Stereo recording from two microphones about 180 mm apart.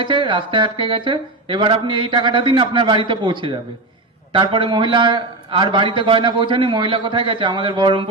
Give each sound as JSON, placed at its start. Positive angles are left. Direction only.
{"t": 0.0, "sound": "a man's voice", "side_deg": -25}